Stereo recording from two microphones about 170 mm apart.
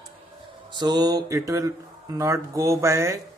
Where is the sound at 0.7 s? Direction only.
25° right (ahead or behind).